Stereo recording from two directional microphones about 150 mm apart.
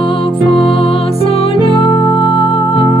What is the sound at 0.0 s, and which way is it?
Music, 35° left (ahead or behind).